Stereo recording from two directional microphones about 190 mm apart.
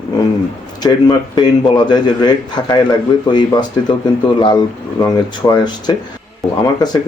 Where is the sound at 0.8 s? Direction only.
20° left (ahead or behind).